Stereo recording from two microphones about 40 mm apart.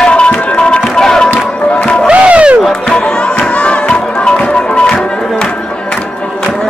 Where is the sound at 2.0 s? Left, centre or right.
Right.